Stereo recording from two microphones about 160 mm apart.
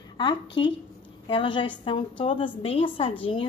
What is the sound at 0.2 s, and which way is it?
A woman's voice, 30° left (ahead or behind).